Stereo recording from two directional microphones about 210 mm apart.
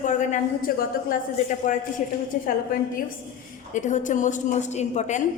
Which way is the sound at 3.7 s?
35° left (ahead or behind).